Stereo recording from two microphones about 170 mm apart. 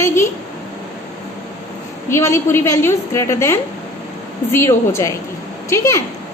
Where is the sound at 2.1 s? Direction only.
15° left (ahead or behind).